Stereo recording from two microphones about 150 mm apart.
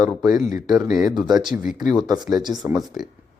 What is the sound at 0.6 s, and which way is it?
Speech, centre (ahead or behind).